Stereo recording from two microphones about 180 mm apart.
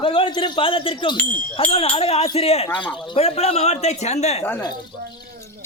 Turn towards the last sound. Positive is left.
turn(degrees=35)  # may be behind; listen again after turning